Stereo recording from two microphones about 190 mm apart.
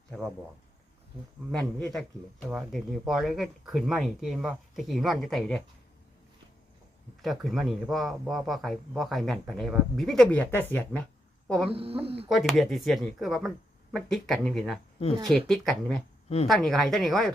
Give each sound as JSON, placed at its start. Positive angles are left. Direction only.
{"t": 0.1, "sound": "speech", "side_deg": 0}
{"t": 1.8, "sound": "speech", "side_deg": 5}
{"t": 7.2, "sound": "speech", "side_deg": 0}
{"t": 11.7, "sound": "speech", "side_deg": -30}
{"t": 12.3, "sound": "speech", "side_deg": 0}